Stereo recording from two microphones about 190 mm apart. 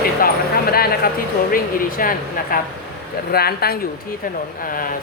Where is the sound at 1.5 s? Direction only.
50° left (ahead or behind).